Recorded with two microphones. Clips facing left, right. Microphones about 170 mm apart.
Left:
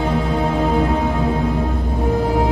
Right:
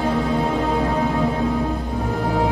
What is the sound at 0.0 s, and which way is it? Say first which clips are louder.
Music: left 1 dB; 20° left (ahead or behind).